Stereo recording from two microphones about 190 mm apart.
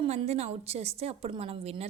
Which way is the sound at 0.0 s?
30° right (ahead or behind).